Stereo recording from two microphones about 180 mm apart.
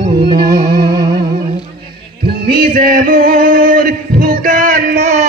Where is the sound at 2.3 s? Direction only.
60° right (ahead or behind).